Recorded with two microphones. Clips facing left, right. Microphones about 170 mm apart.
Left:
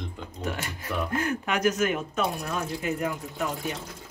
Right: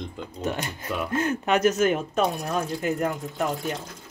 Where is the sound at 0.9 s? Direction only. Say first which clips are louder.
Right 2 dB; 20° right (ahead or behind); by 3.1 s 35° right (ahead or behind).